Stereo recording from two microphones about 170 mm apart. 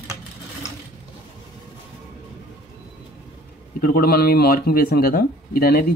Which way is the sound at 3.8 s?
60° left (ahead or behind).